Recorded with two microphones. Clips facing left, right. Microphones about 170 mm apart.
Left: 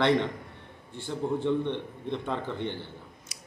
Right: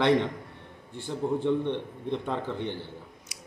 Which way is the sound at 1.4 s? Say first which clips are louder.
Right 1 dB; 5° right (ahead or behind).